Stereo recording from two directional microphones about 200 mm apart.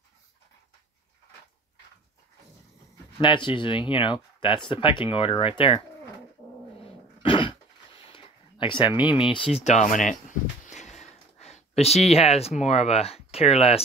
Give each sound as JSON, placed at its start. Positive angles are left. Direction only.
{"t": 3.2, "sound": "speech", "side_deg": 25}
{"t": 6.8, "sound": "dog", "side_deg": 25}
{"t": 8.8, "sound": "speech", "side_deg": -5}
{"t": 9.6, "sound": "speech", "side_deg": 35}
{"t": 10.7, "sound": "a sound", "side_deg": 35}